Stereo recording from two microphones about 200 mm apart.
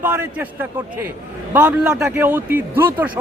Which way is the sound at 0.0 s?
10° right (ahead or behind).